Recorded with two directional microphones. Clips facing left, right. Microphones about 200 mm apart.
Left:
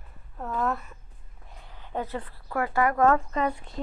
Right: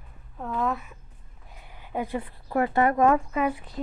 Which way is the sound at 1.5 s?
10° right (ahead or behind).